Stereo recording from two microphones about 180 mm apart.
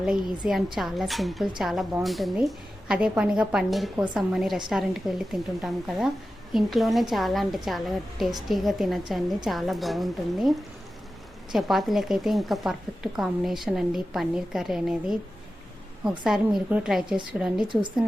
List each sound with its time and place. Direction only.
0.0 s a woman's voice: 5° right (ahead or behind)
11.5 s a woman's voice: centre (ahead or behind)